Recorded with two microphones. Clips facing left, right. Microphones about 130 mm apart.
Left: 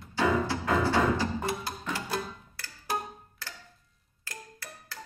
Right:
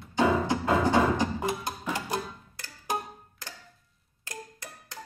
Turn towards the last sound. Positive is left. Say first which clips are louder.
# even
turn(degrees=-20)  # may be behind; listen again after turning